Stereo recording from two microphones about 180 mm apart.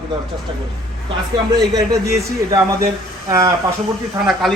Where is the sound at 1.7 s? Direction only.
20° right (ahead or behind).